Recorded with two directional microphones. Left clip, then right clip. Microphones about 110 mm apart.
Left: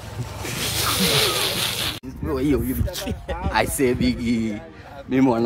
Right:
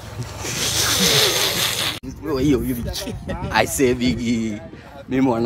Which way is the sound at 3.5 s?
15° right (ahead or behind).